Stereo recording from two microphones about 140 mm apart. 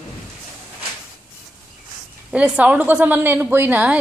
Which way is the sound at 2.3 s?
10° right (ahead or behind).